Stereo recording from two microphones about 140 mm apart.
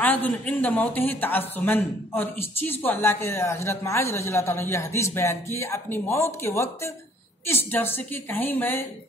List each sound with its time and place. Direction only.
0.0 s a woman's voice: 10° left (ahead or behind)